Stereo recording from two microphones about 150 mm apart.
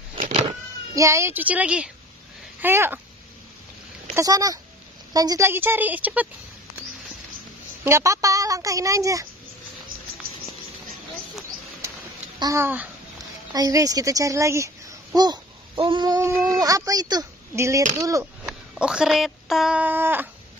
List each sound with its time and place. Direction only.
0.5 s a woman's voice: 20° right (ahead or behind)
4.1 s a woman's voice: 20° right (ahead or behind)
7.8 s speech: 20° right (ahead or behind)
12.4 s a woman's voice: 20° right (ahead or behind)
13.5 s speech: 25° right (ahead or behind)
18.4 s speech: 5° right (ahead or behind)